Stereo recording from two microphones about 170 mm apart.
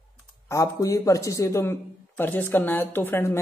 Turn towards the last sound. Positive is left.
turn(degrees=15)  # may be behind; listen again after turning